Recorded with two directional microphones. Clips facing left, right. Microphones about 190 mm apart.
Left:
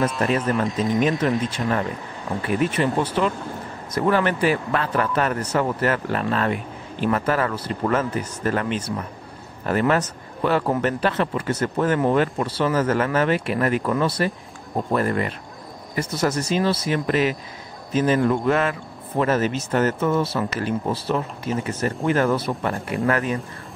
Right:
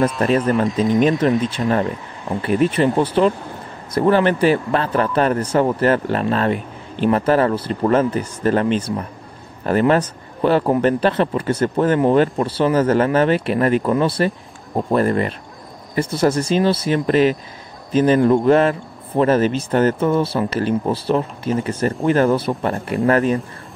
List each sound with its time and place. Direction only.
0.7 s speech: centre (ahead or behind)
1.6 s speech: 40° right (ahead or behind)